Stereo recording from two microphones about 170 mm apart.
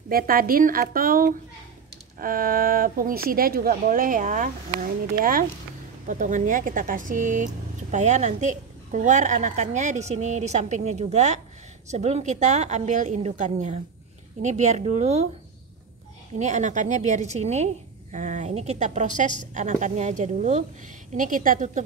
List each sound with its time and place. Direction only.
0.1 s speech: 60° right (ahead or behind)
6.0 s a woman's voice: 50° right (ahead or behind)
16.3 s a woman's voice: 45° right (ahead or behind)